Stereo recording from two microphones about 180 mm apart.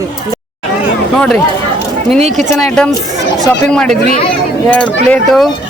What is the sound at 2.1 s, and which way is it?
Speech, 40° right (ahead or behind).